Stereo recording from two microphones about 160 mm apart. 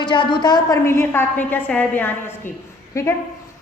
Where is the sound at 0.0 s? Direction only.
30° left (ahead or behind).